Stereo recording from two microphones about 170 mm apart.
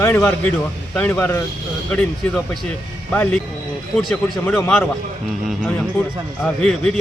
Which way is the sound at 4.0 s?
Centre (ahead or behind).